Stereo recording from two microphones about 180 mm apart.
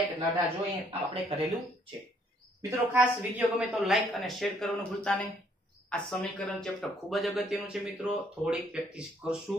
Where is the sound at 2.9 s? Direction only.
10° right (ahead or behind).